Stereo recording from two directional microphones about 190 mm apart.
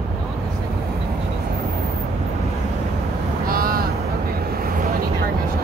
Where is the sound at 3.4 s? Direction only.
50° right (ahead or behind).